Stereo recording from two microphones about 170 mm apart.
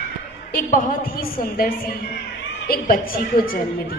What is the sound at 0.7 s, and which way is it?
A woman's voice, 55° left (ahead or behind).